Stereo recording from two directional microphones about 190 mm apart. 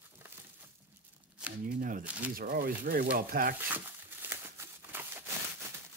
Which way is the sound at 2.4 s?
50° right (ahead or behind).